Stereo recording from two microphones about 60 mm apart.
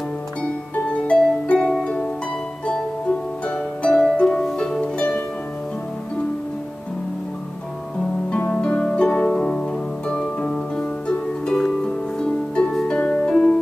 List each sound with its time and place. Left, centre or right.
0.7 s music: left
3.4 s harp: centre
4.6 s music: centre
4.9 s music: left
8.3 s harp: left
10.8 s music: centre